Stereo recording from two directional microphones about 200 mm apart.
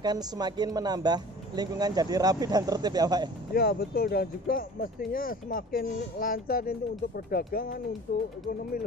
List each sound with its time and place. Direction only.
0.0 s speech: 20° right (ahead or behind)
3.5 s speech: 50° left (ahead or behind)